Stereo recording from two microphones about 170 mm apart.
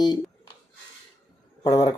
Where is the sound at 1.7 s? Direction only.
20° left (ahead or behind).